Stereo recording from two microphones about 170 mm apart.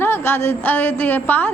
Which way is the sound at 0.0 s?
15° left (ahead or behind).